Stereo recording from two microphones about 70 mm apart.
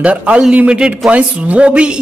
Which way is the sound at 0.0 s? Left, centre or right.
Centre.